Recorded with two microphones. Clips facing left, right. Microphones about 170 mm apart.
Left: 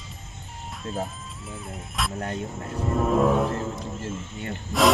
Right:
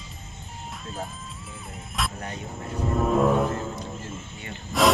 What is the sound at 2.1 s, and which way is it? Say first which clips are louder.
Speech: left 5 dB; 50° left (ahead or behind).